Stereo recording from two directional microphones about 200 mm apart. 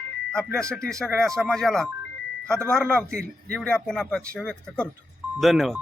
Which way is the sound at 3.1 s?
5° left (ahead or behind).